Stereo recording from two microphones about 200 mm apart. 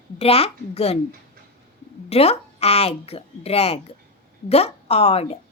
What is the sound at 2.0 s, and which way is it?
A woman's voice, 30° left (ahead or behind).